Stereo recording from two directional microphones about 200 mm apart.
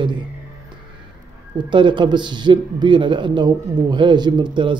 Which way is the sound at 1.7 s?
25° right (ahead or behind).